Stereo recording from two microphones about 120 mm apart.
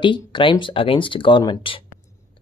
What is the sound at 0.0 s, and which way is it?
Speech, 45° left (ahead or behind).